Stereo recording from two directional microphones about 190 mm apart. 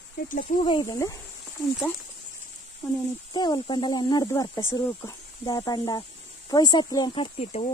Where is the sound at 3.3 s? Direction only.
20° left (ahead or behind).